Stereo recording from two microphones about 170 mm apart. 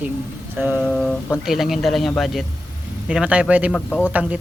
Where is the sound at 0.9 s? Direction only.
Centre (ahead or behind).